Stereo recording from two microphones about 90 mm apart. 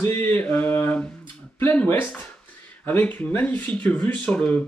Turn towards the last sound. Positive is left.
turn(degrees=15)  # may be behind; listen again after turning